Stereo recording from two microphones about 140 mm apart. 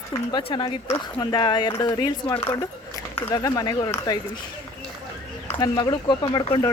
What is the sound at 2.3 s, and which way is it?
Speech, 15° left (ahead or behind).